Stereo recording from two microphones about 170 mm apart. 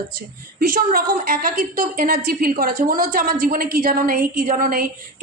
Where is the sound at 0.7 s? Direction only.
55° right (ahead or behind).